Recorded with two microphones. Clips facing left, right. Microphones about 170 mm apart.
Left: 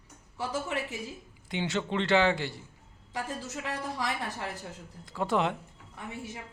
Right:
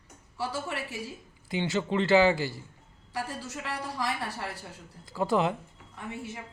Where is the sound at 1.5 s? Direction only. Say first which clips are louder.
Right 2 dB; centre (ahead or behind).